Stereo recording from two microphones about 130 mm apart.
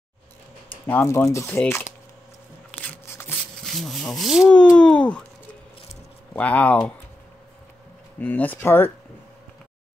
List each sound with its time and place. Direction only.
0.8 s speech: 20° left (ahead or behind)
2.7 s a sound: 15° left (ahead or behind)
3.7 s speech: centre (ahead or behind)
4.7 s speech: 10° left (ahead or behind)
6.3 s speech: 10° left (ahead or behind)
8.2 s speech: 15° left (ahead or behind)